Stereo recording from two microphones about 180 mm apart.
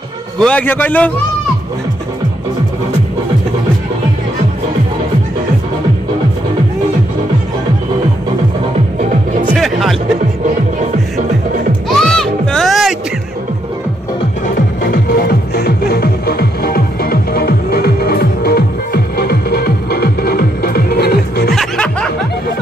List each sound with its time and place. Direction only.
0.4 s a man's voice: 5° left (ahead or behind)
9.5 s music: centre (ahead or behind)
12.0 s music: 5° left (ahead or behind)
14.8 s music: 55° left (ahead or behind)
21.5 s music: 5° left (ahead or behind)